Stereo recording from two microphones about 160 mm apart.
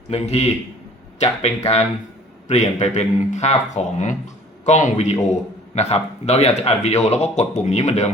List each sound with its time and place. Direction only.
0.1 s a man's voice: 40° left (ahead or behind)